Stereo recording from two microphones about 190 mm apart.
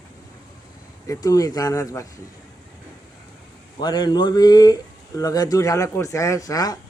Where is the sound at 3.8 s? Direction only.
20° left (ahead or behind).